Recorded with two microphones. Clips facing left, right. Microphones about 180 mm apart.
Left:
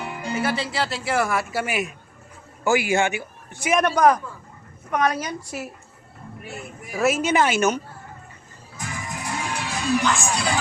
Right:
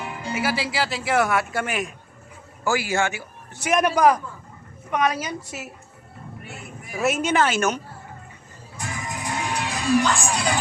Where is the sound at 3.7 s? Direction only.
5° right (ahead or behind).